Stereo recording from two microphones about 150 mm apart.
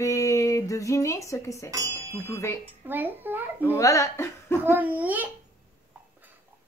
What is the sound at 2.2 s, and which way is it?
Speech, 15° left (ahead or behind).